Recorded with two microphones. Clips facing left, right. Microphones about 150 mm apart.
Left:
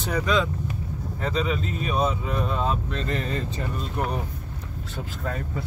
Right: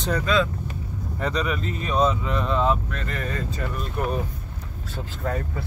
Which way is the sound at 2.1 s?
90° right.